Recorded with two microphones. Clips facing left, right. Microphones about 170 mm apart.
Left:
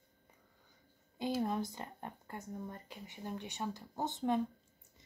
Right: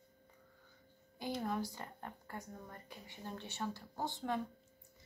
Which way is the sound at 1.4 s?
20° left (ahead or behind).